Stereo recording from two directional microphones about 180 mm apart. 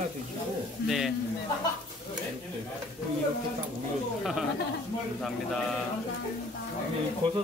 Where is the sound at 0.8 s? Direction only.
Centre (ahead or behind).